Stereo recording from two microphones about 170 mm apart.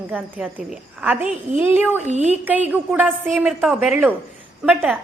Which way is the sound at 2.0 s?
40° right (ahead or behind).